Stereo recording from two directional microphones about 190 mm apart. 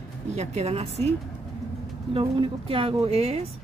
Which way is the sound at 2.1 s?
30° right (ahead or behind).